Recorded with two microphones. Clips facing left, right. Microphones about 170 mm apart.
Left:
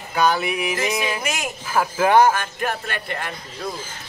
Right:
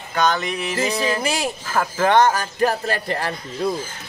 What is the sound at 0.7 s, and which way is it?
Speech, 30° right (ahead or behind).